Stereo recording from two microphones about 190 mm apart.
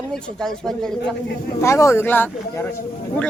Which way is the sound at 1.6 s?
15° left (ahead or behind).